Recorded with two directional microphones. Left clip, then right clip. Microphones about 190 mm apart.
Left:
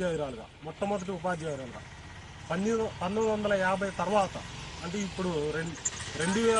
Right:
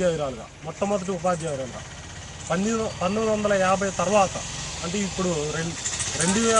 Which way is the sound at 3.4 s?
10° right (ahead or behind).